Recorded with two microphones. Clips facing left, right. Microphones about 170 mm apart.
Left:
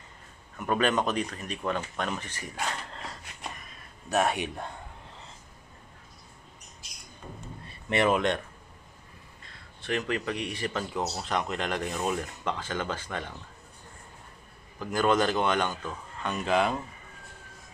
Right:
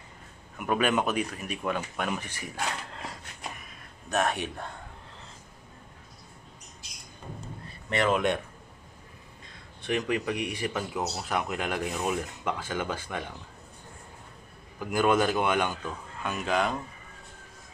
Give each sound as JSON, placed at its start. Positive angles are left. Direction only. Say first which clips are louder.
{"t": 0.6, "sound": "speech", "louder": "even", "side_deg": -10}
{"t": 4.1, "sound": "speech", "louder": "left 1 dB", "side_deg": 10}
{"t": 7.6, "sound": "a sound", "louder": "left 2 dB", "side_deg": 25}
{"t": 8.1, "sound": "speech", "louder": "right 2 dB", "side_deg": -5}
{"t": 9.8, "sound": "speech", "louder": "right 2 dB", "side_deg": -15}
{"t": 14.8, "sound": "speech", "louder": "right 1 dB", "side_deg": -10}